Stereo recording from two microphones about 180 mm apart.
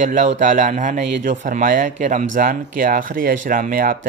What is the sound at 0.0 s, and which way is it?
Speech, 45° right (ahead or behind).